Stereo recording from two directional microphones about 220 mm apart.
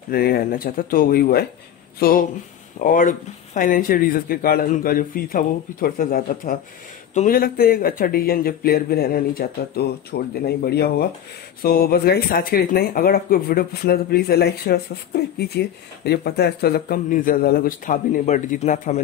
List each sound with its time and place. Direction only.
0.1 s speech: 45° left (ahead or behind)